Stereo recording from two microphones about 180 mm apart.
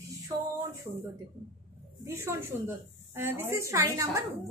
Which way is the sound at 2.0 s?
15° right (ahead or behind).